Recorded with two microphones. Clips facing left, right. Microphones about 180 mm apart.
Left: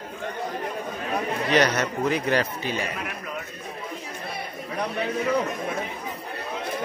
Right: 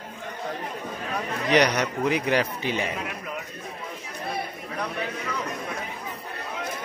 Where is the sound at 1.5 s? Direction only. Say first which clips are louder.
Right 1 dB; 15° right (ahead or behind).